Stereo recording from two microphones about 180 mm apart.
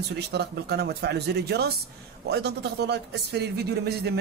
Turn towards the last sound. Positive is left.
turn(degrees=-65)  # may be behind; listen again after turning